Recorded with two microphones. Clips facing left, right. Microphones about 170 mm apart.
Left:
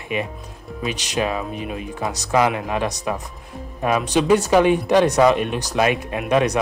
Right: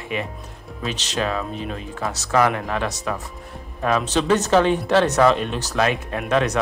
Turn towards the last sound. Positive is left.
turn(degrees=15)  # may be behind; listen again after turning